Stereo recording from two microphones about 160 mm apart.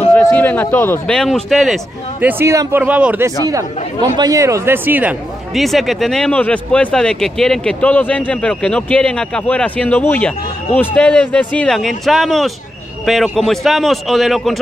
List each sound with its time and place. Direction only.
0.1 s speech: 10° left (ahead or behind); by 3.3 s 10° right (ahead or behind)
4.2 s speech: 20° right (ahead or behind)
5.5 s a man's voice: centre (ahead or behind)